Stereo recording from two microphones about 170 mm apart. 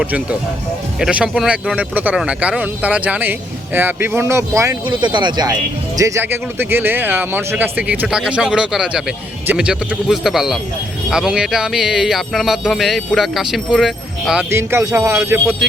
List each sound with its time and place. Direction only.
0.0 s speech: 10° right (ahead or behind)
4.9 s speech: 25° right (ahead or behind); by 14.4 s 5° right (ahead or behind)
14.5 s speech: 15° right (ahead or behind)